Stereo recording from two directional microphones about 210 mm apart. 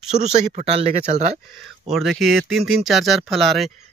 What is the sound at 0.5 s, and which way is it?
Speech, 30° right (ahead or behind).